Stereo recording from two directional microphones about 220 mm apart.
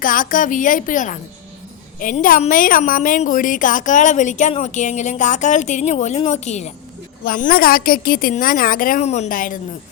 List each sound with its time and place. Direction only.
0.0 s a woman's voice: 40° left (ahead or behind)